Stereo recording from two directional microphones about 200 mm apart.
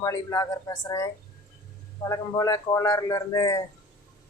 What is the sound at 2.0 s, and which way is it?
Speech, 15° left (ahead or behind).